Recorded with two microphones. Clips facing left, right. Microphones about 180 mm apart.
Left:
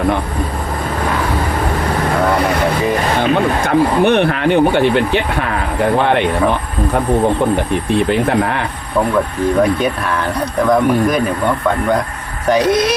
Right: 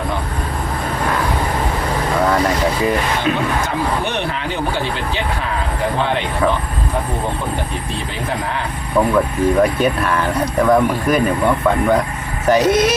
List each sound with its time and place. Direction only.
3.7 s speech: 60° left (ahead or behind)
7.7 s speech: 60° left (ahead or behind)
9.0 s speech: 5° right (ahead or behind)
12.5 s speech: 10° right (ahead or behind)